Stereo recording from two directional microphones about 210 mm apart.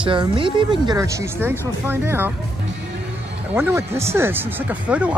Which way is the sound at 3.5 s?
10° right (ahead or behind).